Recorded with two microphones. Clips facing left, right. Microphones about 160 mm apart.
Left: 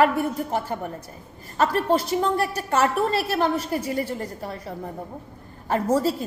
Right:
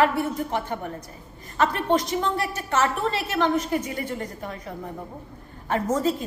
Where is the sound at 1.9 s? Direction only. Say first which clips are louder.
Left 2 dB; 35° left (ahead or behind).